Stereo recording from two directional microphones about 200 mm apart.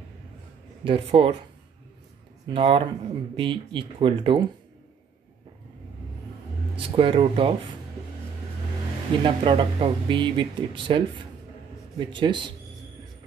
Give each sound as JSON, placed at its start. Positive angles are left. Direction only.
{"t": 0.8, "sound": "speech", "side_deg": -25}
{"t": 2.4, "sound": "speech", "side_deg": -25}
{"t": 7.0, "sound": "speech", "side_deg": -25}
{"t": 9.2, "sound": "speech", "side_deg": -25}